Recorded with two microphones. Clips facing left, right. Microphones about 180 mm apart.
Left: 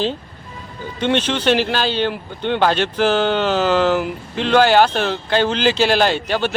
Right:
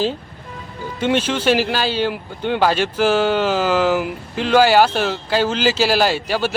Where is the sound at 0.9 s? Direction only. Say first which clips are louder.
Even; 10° right (ahead or behind).